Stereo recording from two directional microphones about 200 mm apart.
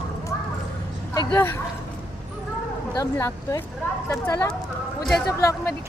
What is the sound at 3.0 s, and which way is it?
Speech, 15° left (ahead or behind).